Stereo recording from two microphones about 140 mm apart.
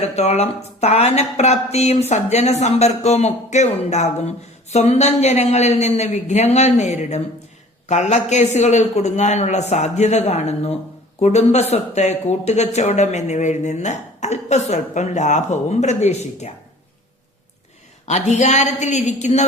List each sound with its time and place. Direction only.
0.2 s speech: 50° left (ahead or behind)
18.0 s speech: 55° left (ahead or behind)